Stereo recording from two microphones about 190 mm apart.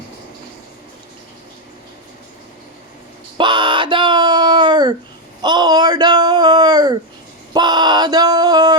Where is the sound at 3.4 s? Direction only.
25° right (ahead or behind).